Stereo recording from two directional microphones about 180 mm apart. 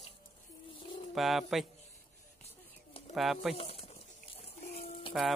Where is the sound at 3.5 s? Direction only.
30° left (ahead or behind).